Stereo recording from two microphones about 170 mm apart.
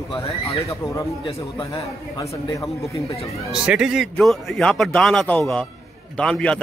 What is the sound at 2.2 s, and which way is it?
Speech, 20° left (ahead or behind).